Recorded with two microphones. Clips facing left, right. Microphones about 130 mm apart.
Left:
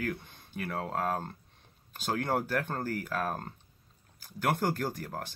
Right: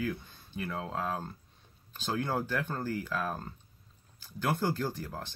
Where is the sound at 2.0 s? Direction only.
15° left (ahead or behind).